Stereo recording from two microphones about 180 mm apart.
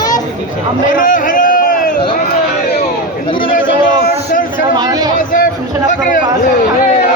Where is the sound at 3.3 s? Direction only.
25° left (ahead or behind).